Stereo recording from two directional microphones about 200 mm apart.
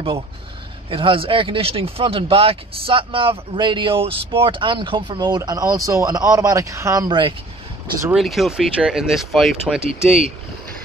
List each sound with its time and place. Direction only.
0.8 s speech: 25° right (ahead or behind)
8.1 s speech: centre (ahead or behind)